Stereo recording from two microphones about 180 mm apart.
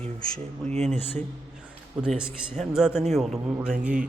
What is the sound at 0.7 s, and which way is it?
Speech, 40° right (ahead or behind).